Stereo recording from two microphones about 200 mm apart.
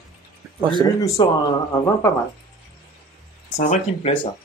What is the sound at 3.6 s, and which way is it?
Speech, 35° left (ahead or behind).